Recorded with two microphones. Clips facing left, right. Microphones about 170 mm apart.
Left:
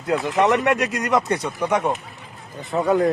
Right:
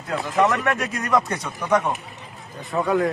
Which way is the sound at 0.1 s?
20° left (ahead or behind).